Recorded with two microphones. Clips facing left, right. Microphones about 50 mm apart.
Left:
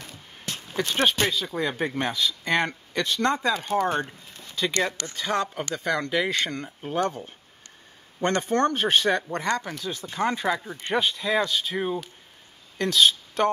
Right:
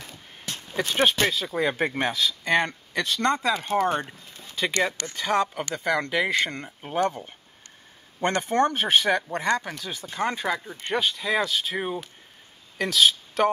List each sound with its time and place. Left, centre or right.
0.0 s a sound: centre
1.0 s speech: centre
4.6 s speech: right; by 13.5 s centre